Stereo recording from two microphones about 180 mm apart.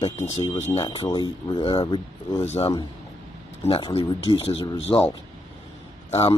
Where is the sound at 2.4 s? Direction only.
35° left (ahead or behind).